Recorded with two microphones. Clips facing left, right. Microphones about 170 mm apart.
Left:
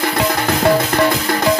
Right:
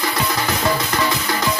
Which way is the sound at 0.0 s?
55° left (ahead or behind).